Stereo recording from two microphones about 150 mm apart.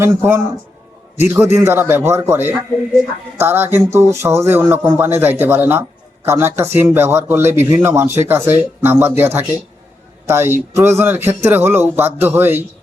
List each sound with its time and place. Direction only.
0.0 s speech: 15° right (ahead or behind)